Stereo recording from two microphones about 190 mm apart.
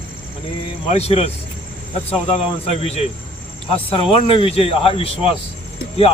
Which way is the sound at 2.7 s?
35° left (ahead or behind).